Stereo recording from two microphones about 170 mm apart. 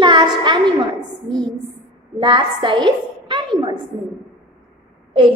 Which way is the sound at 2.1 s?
30° right (ahead or behind).